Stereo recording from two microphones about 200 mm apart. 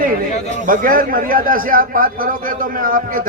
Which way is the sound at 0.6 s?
45° right (ahead or behind).